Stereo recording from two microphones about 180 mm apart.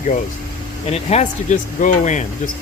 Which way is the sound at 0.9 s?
35° left (ahead or behind).